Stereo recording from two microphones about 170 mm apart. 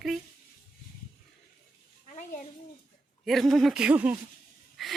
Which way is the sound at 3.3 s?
Centre (ahead or behind).